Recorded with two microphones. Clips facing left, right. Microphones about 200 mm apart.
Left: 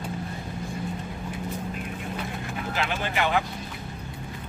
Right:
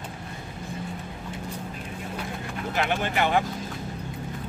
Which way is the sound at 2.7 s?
50° right (ahead or behind).